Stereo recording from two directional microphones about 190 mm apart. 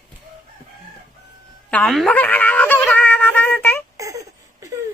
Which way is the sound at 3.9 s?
15° right (ahead or behind).